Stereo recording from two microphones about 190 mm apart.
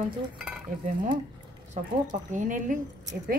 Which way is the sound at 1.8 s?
40° right (ahead or behind).